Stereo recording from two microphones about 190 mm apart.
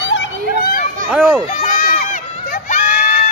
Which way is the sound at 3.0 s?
50° left (ahead or behind).